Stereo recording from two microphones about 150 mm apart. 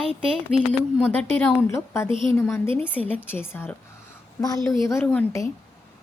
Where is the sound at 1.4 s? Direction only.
15° left (ahead or behind).